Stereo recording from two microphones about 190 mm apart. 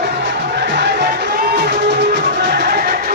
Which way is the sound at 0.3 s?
65° right (ahead or behind).